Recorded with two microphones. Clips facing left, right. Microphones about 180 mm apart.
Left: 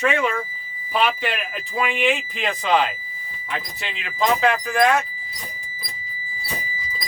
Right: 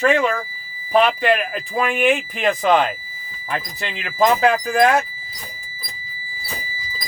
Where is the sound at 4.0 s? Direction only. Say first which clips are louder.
Right 4 dB; 40° right (ahead or behind).